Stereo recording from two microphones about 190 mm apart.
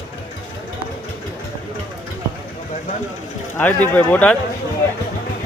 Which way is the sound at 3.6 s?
10° left (ahead or behind).